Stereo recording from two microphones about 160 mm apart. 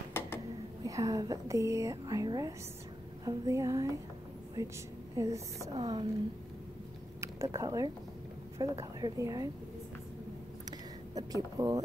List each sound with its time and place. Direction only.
0.8 s a woman's voice: 20° right (ahead or behind)
7.2 s a woman's voice: 20° right (ahead or behind)
11.1 s a woman's voice: 25° right (ahead or behind)